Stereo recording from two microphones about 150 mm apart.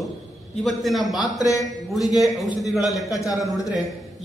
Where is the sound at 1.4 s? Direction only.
25° left (ahead or behind).